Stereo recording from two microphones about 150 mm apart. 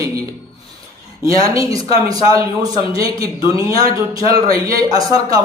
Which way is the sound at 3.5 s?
40° left (ahead or behind).